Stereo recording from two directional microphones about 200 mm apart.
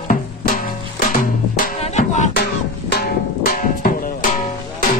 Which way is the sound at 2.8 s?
50° left (ahead or behind).